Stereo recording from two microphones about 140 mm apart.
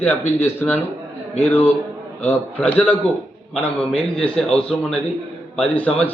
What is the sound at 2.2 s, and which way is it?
A man's voice, 10° left (ahead or behind).